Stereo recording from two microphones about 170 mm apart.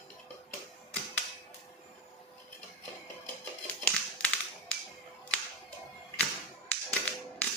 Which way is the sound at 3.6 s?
5° left (ahead or behind).